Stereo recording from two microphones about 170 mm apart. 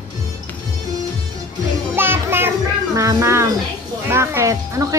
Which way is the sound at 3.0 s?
20° right (ahead or behind).